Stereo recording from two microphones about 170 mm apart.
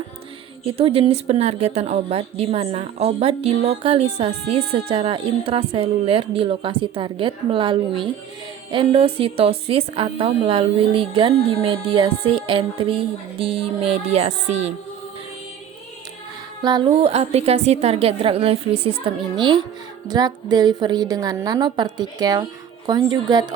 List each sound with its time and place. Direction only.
0.6 s a woman's voice: 35° right (ahead or behind)
16.6 s a woman's voice: 25° right (ahead or behind)